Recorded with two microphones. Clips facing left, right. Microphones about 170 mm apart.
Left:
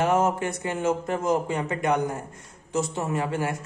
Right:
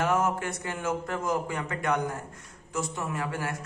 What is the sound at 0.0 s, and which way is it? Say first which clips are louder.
Speech: left 4 dB; 20° left (ahead or behind).